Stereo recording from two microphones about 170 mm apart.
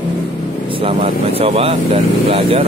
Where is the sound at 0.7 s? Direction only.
35° right (ahead or behind).